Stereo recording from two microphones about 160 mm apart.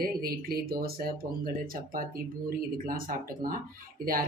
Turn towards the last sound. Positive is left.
turn(degrees=-65)  # may be behind; listen again after turning